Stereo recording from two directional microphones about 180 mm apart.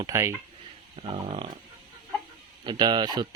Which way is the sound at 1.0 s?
30° right (ahead or behind).